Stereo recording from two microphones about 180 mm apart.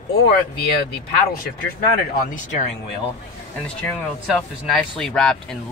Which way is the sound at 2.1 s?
40° left (ahead or behind).